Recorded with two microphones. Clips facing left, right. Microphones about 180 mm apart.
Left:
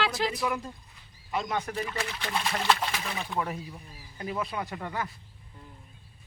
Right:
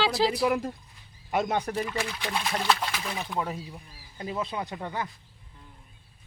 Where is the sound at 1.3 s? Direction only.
55° right (ahead or behind).